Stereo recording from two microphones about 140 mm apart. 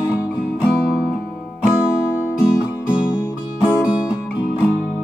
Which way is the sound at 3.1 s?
25° left (ahead or behind).